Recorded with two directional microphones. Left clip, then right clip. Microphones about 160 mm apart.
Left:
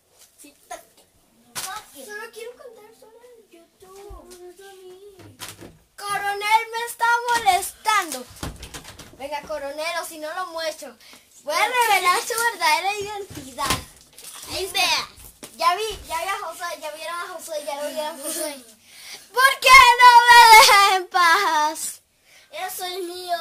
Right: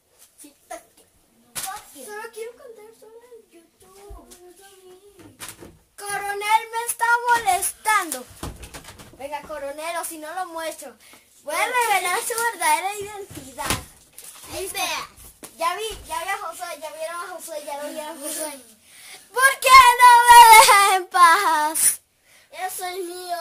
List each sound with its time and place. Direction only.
5.9 s child singing: centre (ahead or behind)
9.2 s a sound: 10° right (ahead or behind)
11.4 s a child's voice: centre (ahead or behind)
14.5 s a child's voice: 15° left (ahead or behind)
15.5 s a sound: 5° left (ahead or behind)
17.5 s a woman's voice: 5° right (ahead or behind)
19.3 s speech: 10° right (ahead or behind)
22.8 s a child's voice: centre (ahead or behind)